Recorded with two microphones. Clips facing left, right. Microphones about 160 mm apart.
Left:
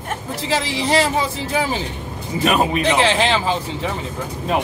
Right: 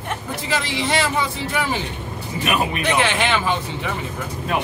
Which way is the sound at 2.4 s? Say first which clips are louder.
Left 5 dB; 35° left (ahead or behind).